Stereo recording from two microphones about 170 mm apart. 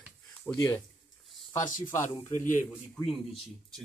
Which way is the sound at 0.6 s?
15° left (ahead or behind).